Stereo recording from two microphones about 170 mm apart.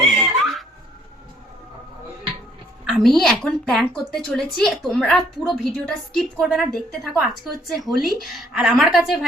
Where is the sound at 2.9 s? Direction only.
Centre (ahead or behind).